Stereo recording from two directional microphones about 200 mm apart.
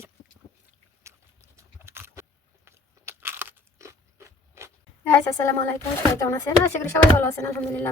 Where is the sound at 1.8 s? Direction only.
10° right (ahead or behind).